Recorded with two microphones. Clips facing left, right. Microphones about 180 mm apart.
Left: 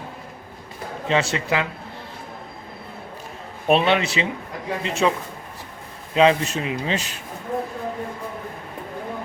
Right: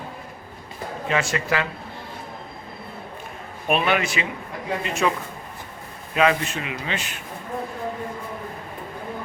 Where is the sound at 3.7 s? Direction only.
25° left (ahead or behind).